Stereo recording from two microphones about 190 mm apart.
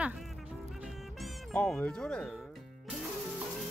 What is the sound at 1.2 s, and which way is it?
Speech, 5° left (ahead or behind).